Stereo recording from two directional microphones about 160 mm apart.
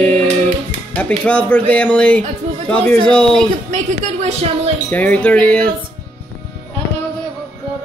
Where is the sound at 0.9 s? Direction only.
10° left (ahead or behind).